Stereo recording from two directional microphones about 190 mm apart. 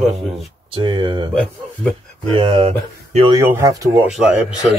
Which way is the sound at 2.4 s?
30° right (ahead or behind).